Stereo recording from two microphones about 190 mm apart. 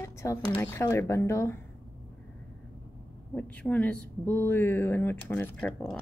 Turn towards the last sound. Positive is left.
turn(degrees=5)  # may be behind; listen again after turning